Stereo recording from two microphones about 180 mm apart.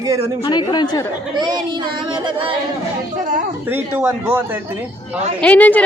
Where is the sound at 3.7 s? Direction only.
10° right (ahead or behind).